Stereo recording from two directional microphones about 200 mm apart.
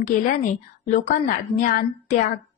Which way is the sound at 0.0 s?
40° left (ahead or behind).